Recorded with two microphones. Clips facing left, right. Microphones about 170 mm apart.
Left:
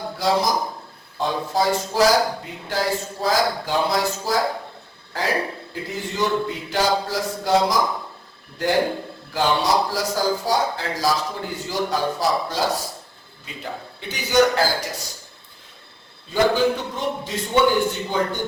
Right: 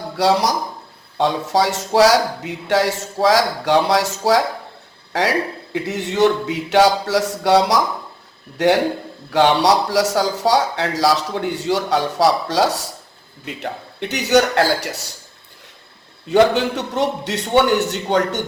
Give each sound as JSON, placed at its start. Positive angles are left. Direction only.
{"t": 0.2, "sound": "a man's voice", "side_deg": -75}
{"t": 16.3, "sound": "a man's voice", "side_deg": -75}